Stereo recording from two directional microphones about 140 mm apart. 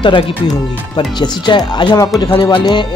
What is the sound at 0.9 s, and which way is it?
Speech, 35° left (ahead or behind).